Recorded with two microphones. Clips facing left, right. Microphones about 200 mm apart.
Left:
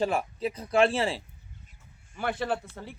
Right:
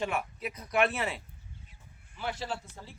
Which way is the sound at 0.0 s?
30° left (ahead or behind).